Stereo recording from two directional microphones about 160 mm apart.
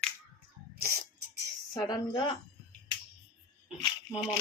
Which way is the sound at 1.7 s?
25° left (ahead or behind).